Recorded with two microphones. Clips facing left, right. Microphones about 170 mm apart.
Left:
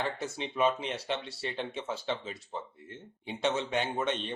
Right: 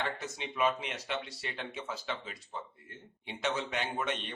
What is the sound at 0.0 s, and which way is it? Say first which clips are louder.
Speech: left 3 dB; 30° left (ahead or behind).